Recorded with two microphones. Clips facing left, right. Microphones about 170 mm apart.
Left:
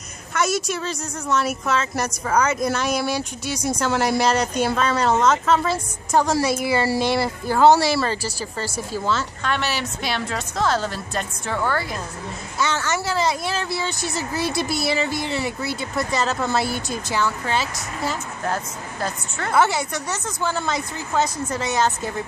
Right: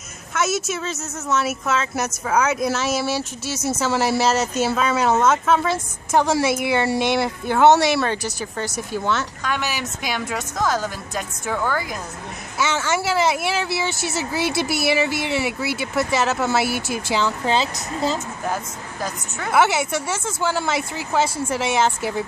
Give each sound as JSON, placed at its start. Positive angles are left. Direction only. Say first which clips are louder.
{"t": 0.3, "sound": "speech", "louder": "even", "side_deg": -5}
{"t": 9.4, "sound": "a woman's voice", "louder": "left 1 dB", "side_deg": -10}
{"t": 12.7, "sound": "a woman's voice", "louder": "right 2 dB", "side_deg": -10}
{"t": 17.2, "sound": "a woman's voice", "louder": "right 2 dB", "side_deg": -20}